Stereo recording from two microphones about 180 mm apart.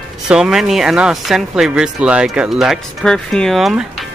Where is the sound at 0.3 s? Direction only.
5° right (ahead or behind).